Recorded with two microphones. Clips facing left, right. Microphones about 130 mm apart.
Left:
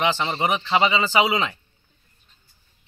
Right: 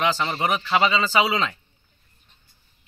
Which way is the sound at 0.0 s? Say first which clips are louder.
Left 1 dB; 20° left (ahead or behind).